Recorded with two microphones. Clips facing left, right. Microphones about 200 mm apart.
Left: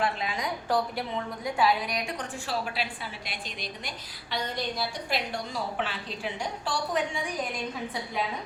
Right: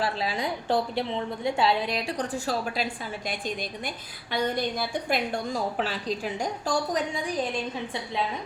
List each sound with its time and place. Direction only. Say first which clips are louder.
0.0 s a woman's voice: right 2 dB; 35° right (ahead or behind)